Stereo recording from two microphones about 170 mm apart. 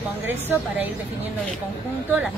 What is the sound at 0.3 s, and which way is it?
Speech, 10° right (ahead or behind).